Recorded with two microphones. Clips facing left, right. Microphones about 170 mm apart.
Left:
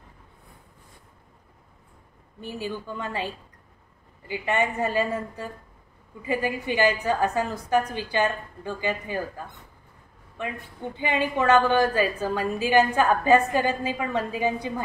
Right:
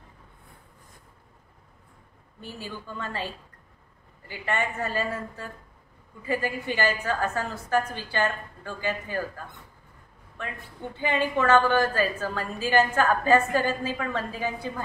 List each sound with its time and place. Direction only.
2.4 s a woman's voice: 15° left (ahead or behind)
4.3 s a woman's voice: 15° left (ahead or behind)
10.4 s a woman's voice: 15° left (ahead or behind)